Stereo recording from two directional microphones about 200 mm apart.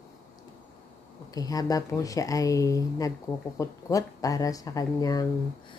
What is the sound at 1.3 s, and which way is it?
Speech, 20° left (ahead or behind).